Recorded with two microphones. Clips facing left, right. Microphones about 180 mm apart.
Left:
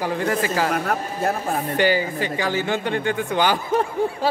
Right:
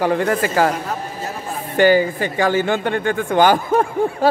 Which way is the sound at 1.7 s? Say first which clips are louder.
Right 8 dB; 50° right (ahead or behind).